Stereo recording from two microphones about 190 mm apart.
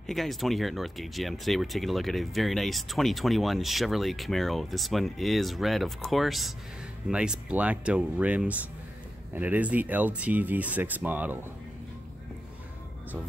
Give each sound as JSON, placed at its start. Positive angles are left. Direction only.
{"t": 0.0, "sound": "speech", "side_deg": 0}